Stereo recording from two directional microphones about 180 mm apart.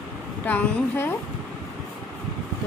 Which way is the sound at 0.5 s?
10° left (ahead or behind).